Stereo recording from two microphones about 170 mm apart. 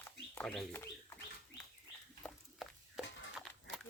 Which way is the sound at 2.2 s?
Centre (ahead or behind).